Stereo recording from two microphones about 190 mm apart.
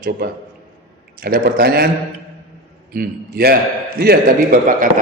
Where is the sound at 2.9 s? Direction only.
50° right (ahead or behind).